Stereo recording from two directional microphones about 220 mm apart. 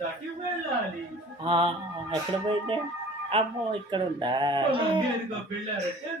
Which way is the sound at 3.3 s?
25° right (ahead or behind).